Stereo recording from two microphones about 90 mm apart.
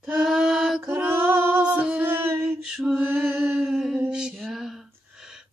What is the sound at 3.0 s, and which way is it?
Mantra, 25° right (ahead or behind).